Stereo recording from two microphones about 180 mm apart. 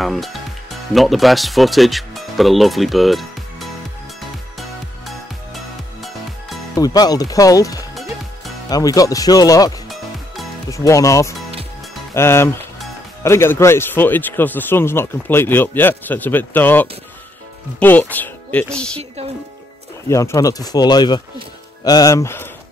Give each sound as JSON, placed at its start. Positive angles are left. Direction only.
{"t": 0.0, "sound": "speech", "side_deg": 0}
{"t": 4.6, "sound": "music", "side_deg": 0}
{"t": 6.8, "sound": "speech", "side_deg": 20}
{"t": 7.9, "sound": "music", "side_deg": 0}
{"t": 8.6, "sound": "speech", "side_deg": 20}
{"t": 20.1, "sound": "speech", "side_deg": 15}